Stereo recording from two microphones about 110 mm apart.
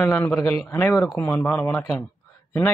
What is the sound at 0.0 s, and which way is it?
Speech, 10° left (ahead or behind).